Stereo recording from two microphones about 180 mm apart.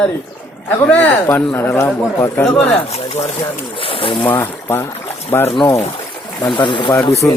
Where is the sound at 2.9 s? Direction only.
35° left (ahead or behind).